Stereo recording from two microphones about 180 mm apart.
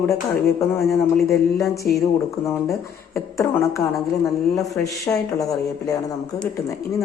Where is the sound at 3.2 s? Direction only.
15° left (ahead or behind).